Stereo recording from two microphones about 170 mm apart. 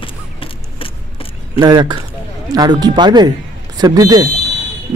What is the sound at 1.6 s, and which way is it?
A man's voice, 25° right (ahead or behind).